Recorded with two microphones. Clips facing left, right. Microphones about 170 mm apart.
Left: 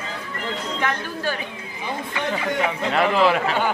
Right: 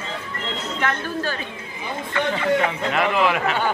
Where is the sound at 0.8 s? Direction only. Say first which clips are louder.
Right 2 dB; 15° left (ahead or behind).